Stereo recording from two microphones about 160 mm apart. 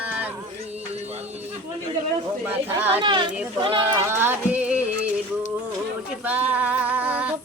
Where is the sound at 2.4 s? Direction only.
15° right (ahead or behind).